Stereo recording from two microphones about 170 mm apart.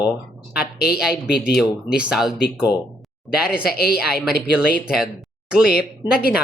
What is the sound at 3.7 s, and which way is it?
Speech, 65° left (ahead or behind).